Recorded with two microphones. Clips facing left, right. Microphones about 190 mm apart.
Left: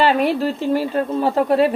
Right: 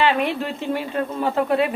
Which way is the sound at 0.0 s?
40° left (ahead or behind).